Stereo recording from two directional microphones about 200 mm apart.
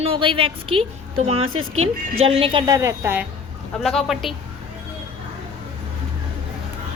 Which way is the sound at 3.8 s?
Centre (ahead or behind).